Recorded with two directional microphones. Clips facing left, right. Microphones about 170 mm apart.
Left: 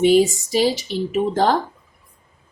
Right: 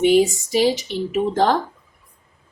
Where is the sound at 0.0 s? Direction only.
35° left (ahead or behind).